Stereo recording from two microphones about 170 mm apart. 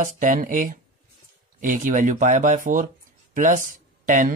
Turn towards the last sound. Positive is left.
turn(degrees=-50)  # may be behind; listen again after turning